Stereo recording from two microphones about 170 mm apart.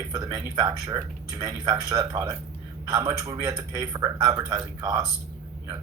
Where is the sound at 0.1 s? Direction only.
25° right (ahead or behind).